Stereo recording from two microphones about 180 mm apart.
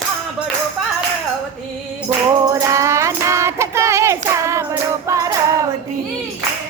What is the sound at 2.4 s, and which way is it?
Child singing, 15° right (ahead or behind).